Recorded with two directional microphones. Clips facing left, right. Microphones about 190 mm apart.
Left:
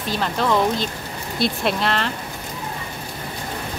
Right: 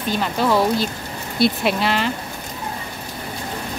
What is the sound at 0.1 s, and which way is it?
Speech, 5° right (ahead or behind).